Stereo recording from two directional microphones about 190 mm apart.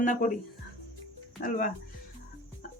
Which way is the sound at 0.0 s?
45° left (ahead or behind).